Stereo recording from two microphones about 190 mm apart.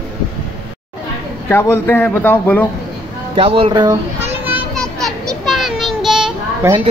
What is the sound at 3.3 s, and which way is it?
Speech, 30° right (ahead or behind).